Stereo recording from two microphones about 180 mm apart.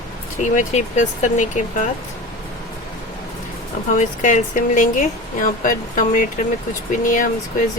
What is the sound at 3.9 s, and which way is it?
Speech, 45° left (ahead or behind).